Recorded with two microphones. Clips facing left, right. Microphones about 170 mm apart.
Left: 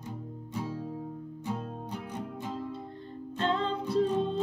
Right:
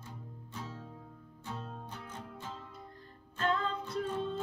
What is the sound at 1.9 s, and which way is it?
Music, 15° left (ahead or behind).